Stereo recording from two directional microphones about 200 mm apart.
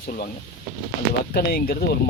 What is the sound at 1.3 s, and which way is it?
Speech, 50° left (ahead or behind).